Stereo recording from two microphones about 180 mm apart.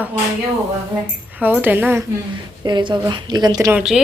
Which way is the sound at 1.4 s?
10° right (ahead or behind).